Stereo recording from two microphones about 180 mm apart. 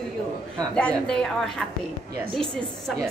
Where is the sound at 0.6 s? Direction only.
5° left (ahead or behind).